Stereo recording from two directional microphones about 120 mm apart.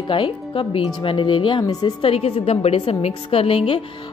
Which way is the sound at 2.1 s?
55° left (ahead or behind).